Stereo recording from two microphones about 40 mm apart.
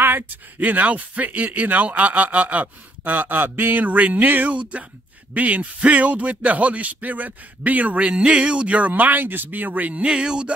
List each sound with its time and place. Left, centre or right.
0.0 s a sound: right
0.6 s speech: right
3.0 s speech: right
4.5 s speech: right
10.0 s speech: right